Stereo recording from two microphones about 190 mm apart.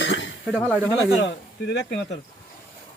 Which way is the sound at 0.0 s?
75° left (ahead or behind).